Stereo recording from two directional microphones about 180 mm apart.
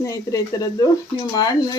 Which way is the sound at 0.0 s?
15° left (ahead or behind).